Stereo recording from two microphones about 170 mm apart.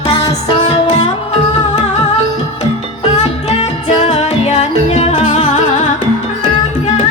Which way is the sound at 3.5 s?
35° left (ahead or behind).